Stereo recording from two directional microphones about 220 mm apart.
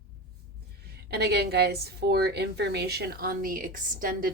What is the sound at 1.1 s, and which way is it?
A woman's voice, 45° right (ahead or behind).